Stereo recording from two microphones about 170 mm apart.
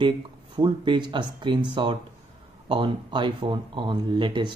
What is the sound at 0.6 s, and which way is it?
Speech, 30° right (ahead or behind).